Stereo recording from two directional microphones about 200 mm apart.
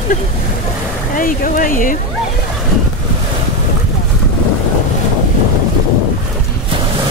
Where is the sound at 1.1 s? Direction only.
45° left (ahead or behind).